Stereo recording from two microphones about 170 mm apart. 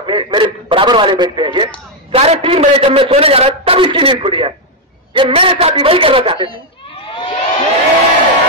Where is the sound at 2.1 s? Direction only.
35° right (ahead or behind).